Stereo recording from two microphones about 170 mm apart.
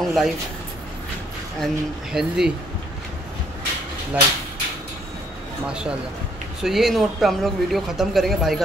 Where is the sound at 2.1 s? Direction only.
5° right (ahead or behind).